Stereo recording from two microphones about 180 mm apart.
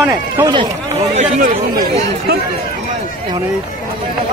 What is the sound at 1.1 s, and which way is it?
Speech, 45° right (ahead or behind).